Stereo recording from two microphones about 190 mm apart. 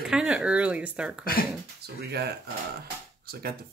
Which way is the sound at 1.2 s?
50° left (ahead or behind).